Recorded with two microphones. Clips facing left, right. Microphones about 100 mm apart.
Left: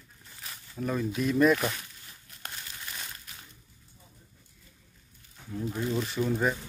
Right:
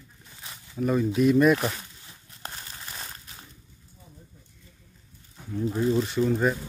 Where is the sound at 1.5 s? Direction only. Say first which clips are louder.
Right 2 dB; 30° right (ahead or behind).